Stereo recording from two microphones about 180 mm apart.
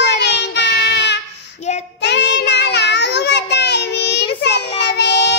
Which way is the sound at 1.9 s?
70° left (ahead or behind).